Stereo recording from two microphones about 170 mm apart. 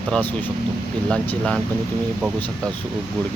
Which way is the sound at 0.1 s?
10° left (ahead or behind).